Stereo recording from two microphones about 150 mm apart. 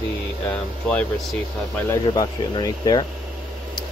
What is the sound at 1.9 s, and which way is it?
Speech, 30° left (ahead or behind).